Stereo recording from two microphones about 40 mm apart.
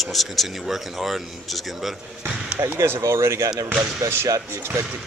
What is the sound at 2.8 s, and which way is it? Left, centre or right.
Speech, right.